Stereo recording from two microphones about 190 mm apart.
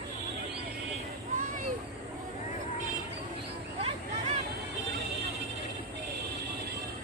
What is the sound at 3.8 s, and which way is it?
Vehicle, 35° right (ahead or behind).